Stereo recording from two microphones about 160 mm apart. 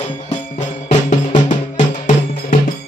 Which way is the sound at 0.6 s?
50° left (ahead or behind).